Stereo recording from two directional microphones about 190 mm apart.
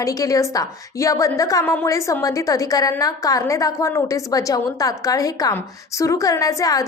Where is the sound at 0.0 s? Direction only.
15° left (ahead or behind).